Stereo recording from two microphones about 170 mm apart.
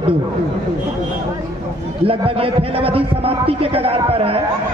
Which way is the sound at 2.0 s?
35° right (ahead or behind).